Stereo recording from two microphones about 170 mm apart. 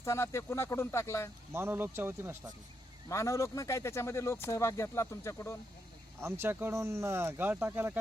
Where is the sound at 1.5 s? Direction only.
15° right (ahead or behind).